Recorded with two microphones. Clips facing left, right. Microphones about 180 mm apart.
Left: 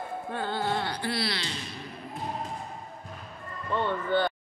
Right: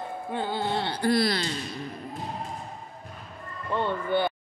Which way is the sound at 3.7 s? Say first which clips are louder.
Right 1 dB; 15° right (ahead or behind).